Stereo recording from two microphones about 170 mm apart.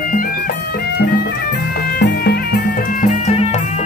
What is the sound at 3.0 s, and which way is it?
Music, 40° left (ahead or behind).